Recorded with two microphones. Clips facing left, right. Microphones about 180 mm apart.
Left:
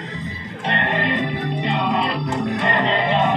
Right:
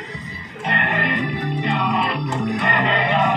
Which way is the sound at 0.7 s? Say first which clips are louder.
Left 1 dB; 30° left (ahead or behind).